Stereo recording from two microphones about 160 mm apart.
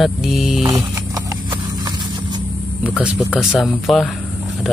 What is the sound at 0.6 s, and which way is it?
Horse, 20° right (ahead or behind).